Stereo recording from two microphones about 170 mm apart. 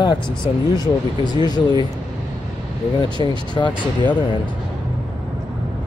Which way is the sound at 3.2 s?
25° left (ahead or behind).